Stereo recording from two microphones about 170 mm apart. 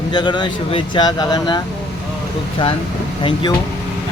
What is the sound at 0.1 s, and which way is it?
Speech, 25° left (ahead or behind).